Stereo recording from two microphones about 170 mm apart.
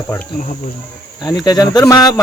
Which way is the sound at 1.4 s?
25° left (ahead or behind).